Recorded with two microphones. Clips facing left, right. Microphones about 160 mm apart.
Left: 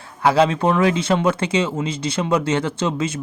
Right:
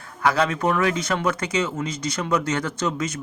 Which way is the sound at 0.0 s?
25° left (ahead or behind).